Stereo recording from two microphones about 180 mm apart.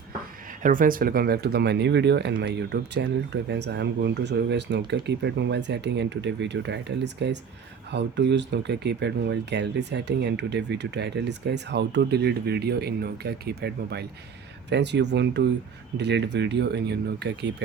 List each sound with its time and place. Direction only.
0.6 s speech: 50° right (ahead or behind); by 17.5 s 70° right (ahead or behind)